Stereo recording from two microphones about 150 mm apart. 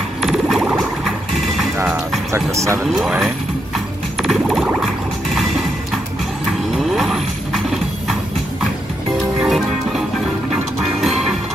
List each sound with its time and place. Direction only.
0.2 s a sound: centre (ahead or behind)
2.3 s speech: 20° right (ahead or behind)
2.8 s speech: centre (ahead or behind)
3.7 s a sound: centre (ahead or behind)
6.7 s vehicle: centre (ahead or behind)
9.4 s music: centre (ahead or behind)